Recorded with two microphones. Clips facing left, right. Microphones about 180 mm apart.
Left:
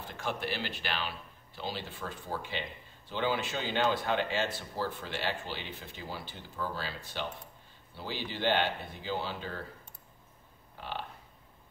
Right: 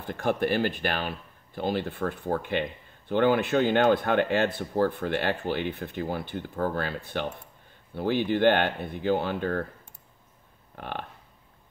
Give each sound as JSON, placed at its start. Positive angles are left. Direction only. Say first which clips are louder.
{"t": 0.0, "sound": "speech", "louder": "right 10 dB", "side_deg": -55}
{"t": 10.8, "sound": "speech", "louder": "right 4 dB", "side_deg": -55}